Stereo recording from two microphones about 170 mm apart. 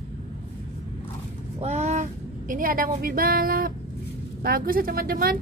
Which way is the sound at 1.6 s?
40° right (ahead or behind).